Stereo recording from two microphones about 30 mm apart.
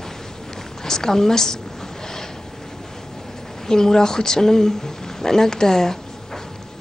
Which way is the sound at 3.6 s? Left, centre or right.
Centre.